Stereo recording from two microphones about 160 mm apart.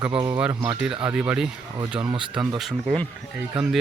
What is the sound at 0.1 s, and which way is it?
Speech, 25° right (ahead or behind).